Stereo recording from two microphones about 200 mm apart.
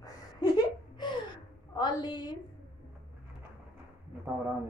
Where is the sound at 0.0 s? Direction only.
20° left (ahead or behind).